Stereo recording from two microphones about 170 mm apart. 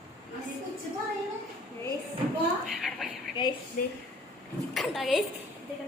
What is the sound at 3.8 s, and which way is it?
Speech, 55° left (ahead or behind).